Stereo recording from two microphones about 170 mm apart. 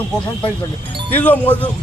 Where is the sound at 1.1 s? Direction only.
10° left (ahead or behind).